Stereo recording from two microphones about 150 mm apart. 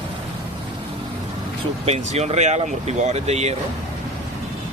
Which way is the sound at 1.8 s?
45° right (ahead or behind).